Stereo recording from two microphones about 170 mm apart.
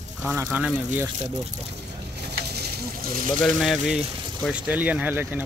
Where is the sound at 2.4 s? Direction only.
70° right (ahead or behind).